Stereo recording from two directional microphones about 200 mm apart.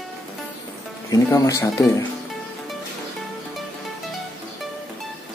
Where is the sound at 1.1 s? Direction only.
15° left (ahead or behind).